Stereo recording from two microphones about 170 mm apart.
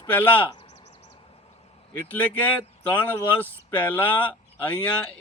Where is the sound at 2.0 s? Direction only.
10° left (ahead or behind).